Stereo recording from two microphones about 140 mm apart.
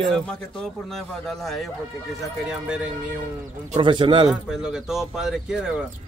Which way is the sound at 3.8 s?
35° right (ahead or behind).